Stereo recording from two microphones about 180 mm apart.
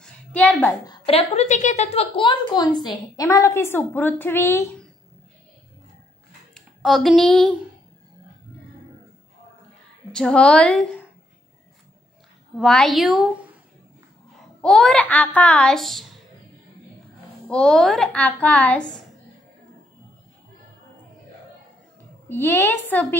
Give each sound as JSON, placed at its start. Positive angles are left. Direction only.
{"t": 0.0, "sound": "a sound", "side_deg": 5}
{"t": 0.8, "sound": "a woman's voice", "side_deg": 35}
{"t": 6.5, "sound": "a woman's voice", "side_deg": 0}
{"t": 10.1, "sound": "a child's voice", "side_deg": 5}
{"t": 12.5, "sound": "a child's voice", "side_deg": 0}
{"t": 14.6, "sound": "a child's voice", "side_deg": 5}
{"t": 17.5, "sound": "a child's voice", "side_deg": 5}
{"t": 22.3, "sound": "a woman's voice", "side_deg": 15}